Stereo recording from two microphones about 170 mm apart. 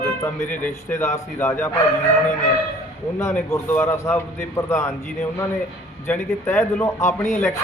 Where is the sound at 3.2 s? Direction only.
15° left (ahead or behind).